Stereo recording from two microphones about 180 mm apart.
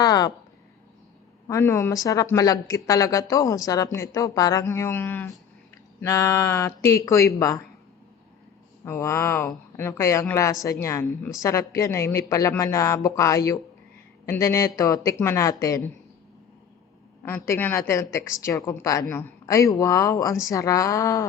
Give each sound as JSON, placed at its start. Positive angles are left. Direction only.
{"t": 0.0, "sound": "a sound", "side_deg": 20}
{"t": 1.5, "sound": "a woman's voice", "side_deg": 15}
{"t": 8.8, "sound": "a woman's voice", "side_deg": 15}
{"t": 17.2, "sound": "a woman's voice", "side_deg": 15}